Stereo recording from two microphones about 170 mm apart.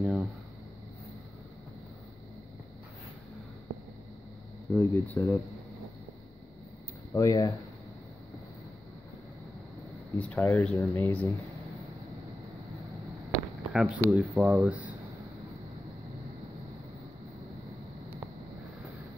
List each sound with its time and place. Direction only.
0.0 s a sound: 5° right (ahead or behind)
4.7 s speech: 10° left (ahead or behind)
7.2 s speech: 20° left (ahead or behind)
10.1 s speech: 10° left (ahead or behind)
13.3 s a sound: centre (ahead or behind)
14.1 s speech: 5° right (ahead or behind)